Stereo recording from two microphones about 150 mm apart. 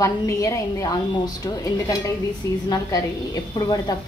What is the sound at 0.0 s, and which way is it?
A woman's voice, 20° left (ahead or behind).